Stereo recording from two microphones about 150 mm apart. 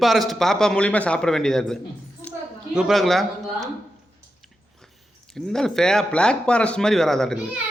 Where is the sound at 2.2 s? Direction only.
15° left (ahead or behind).